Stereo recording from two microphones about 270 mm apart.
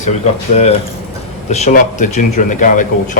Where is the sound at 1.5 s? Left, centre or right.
Left.